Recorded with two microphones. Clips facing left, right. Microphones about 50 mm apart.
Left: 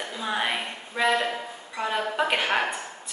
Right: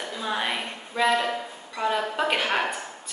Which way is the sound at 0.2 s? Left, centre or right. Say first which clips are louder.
Left 1 dB; centre.